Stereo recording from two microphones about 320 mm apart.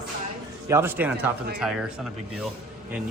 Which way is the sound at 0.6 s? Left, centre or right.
Centre.